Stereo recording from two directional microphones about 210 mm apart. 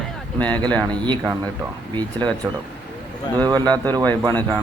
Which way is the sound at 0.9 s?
20° right (ahead or behind).